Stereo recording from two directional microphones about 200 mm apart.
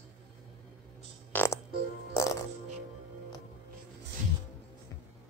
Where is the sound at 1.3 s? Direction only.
10° left (ahead or behind).